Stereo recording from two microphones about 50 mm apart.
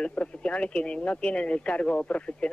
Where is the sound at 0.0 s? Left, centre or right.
Left.